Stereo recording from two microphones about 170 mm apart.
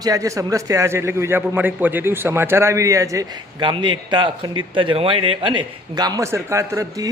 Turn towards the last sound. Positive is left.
turn(degrees=-20)  # may be behind; listen again after turning